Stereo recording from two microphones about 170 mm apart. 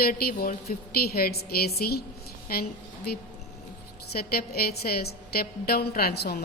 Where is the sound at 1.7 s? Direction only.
65° left (ahead or behind).